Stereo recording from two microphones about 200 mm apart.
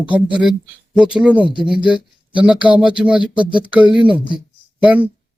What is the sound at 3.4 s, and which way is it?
Speech, 25° right (ahead or behind).